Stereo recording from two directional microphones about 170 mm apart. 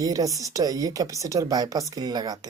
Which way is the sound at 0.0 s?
20° right (ahead or behind).